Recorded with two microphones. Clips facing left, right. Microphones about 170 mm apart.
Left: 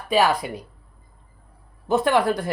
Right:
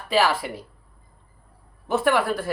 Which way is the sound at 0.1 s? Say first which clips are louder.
Left 2 dB; 15° left (ahead or behind).